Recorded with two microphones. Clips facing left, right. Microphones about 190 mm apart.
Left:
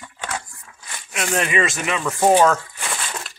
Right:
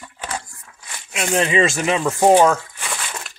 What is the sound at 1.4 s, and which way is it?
Speech, 25° right (ahead or behind).